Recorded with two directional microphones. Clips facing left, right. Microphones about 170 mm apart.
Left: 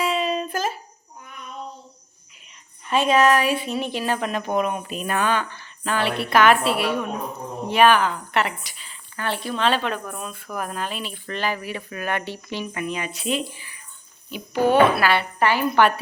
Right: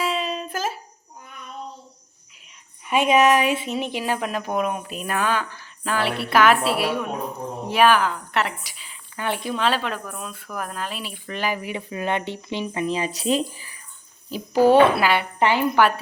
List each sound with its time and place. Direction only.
0.0 s music: centre (ahead or behind)
2.8 s a woman's voice: 15° right (ahead or behind)
9.6 s a woman's voice: centre (ahead or behind); by 15.0 s 30° right (ahead or behind)
15.0 s speech: 15° right (ahead or behind)